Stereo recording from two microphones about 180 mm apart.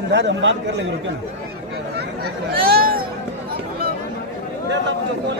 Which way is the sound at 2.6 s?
55° right (ahead or behind).